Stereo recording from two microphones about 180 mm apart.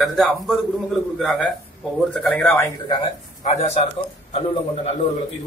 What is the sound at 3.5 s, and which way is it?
Speech, 35° left (ahead or behind).